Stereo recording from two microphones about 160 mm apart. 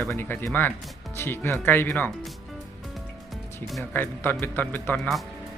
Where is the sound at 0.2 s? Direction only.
10° left (ahead or behind).